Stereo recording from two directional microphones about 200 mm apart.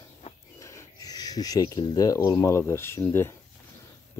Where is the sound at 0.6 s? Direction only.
15° left (ahead or behind).